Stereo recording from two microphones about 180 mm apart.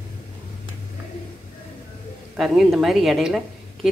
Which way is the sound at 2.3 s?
Centre (ahead or behind).